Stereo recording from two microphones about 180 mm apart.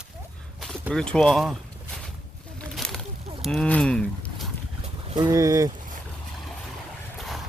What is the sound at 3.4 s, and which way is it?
Speech, 5° left (ahead or behind).